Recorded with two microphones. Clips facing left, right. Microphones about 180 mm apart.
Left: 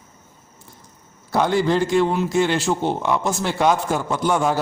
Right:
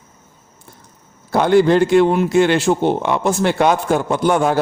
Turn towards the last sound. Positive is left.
turn(degrees=-60)  # may be behind; listen again after turning